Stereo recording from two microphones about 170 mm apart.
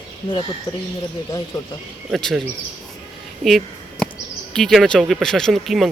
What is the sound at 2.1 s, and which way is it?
Speech, centre (ahead or behind).